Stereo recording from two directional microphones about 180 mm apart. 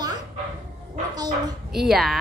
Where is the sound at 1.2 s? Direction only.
20° right (ahead or behind).